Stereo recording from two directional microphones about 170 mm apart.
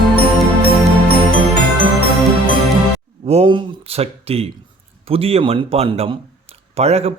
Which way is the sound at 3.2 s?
35° right (ahead or behind).